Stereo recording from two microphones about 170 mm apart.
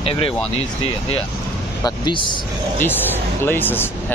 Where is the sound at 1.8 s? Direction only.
25° left (ahead or behind).